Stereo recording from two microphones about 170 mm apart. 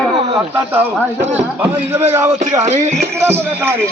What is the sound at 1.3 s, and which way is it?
A man's voice, 10° right (ahead or behind).